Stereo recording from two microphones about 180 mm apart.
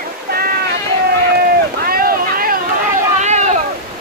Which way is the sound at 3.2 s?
40° right (ahead or behind).